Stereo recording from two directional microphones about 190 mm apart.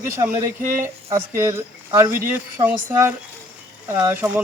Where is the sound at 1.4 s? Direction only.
15° right (ahead or behind).